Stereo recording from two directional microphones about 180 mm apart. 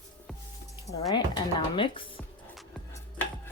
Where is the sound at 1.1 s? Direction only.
25° left (ahead or behind).